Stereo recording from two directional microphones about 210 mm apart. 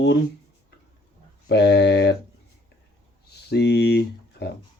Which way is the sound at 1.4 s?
50° left (ahead or behind).